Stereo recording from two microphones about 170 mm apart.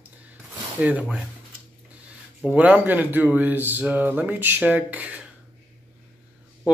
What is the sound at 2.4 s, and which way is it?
Speech, 5° right (ahead or behind).